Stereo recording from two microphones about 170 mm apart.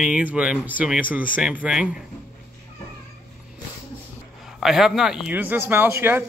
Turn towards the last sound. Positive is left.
turn(degrees=-15)  # may be behind; listen again after turning